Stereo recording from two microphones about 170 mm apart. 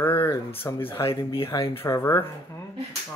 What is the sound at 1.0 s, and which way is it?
Speech, 30° left (ahead or behind).